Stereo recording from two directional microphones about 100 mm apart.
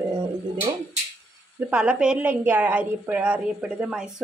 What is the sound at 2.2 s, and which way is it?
A woman's voice, 20° right (ahead or behind).